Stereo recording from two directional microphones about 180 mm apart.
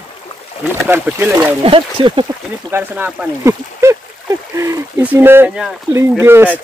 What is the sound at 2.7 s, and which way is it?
Speech, 10° right (ahead or behind).